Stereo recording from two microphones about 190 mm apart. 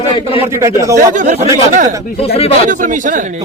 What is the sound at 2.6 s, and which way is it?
Speech, 45° right (ahead or behind).